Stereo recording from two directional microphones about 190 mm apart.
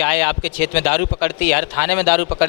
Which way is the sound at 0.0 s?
15° left (ahead or behind).